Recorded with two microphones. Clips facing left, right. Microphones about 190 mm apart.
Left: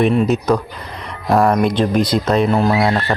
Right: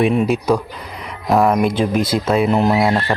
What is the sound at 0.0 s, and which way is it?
Speech, 5° right (ahead or behind).